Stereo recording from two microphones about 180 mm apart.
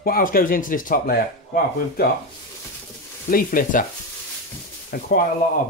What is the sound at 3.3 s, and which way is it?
Speech, 50° left (ahead or behind).